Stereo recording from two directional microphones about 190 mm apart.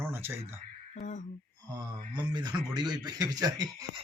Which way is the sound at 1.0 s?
40° left (ahead or behind).